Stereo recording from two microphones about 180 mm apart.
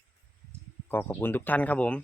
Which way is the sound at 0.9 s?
10° left (ahead or behind).